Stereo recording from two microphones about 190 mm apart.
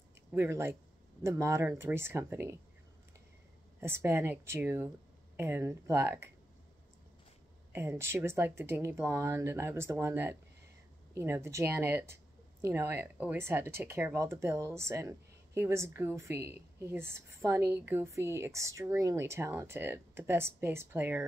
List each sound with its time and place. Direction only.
0.3 s a woman's voice: 10° right (ahead or behind)
3.8 s a woman's voice: 15° right (ahead or behind)
7.7 s a woman's voice: 10° right (ahead or behind)
16.3 s a woman's voice: 55° right (ahead or behind)
16.9 s a woman's voice: 15° right (ahead or behind)